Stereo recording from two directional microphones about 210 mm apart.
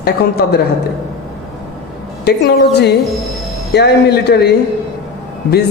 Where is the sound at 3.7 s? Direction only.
55° left (ahead or behind).